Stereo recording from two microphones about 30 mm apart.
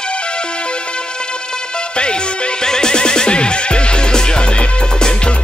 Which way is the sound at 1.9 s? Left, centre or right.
Left.